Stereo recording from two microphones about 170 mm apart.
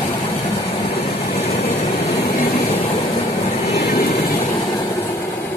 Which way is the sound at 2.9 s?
35° left (ahead or behind).